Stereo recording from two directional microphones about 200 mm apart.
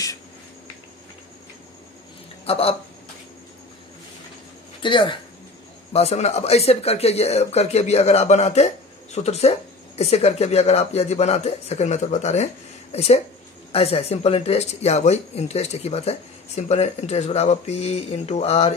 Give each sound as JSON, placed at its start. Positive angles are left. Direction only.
{"t": 2.4, "sound": "speech", "side_deg": 30}
{"t": 4.8, "sound": "speech", "side_deg": 25}